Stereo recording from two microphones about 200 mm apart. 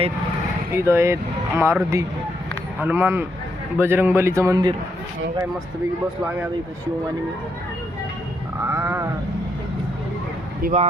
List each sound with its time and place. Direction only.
0.7 s speech: 15° right (ahead or behind)
8.7 s speech: 10° right (ahead or behind)
10.6 s speech: 40° right (ahead or behind)